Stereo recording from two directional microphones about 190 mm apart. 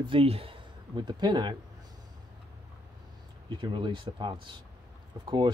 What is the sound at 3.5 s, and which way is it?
Speech, 25° right (ahead or behind).